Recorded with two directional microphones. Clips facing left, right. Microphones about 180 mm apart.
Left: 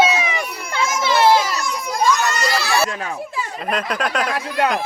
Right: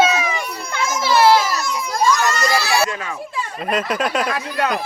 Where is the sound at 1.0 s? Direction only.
20° left (ahead or behind).